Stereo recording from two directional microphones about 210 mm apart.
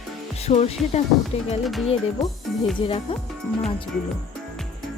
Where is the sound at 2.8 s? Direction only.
25° left (ahead or behind).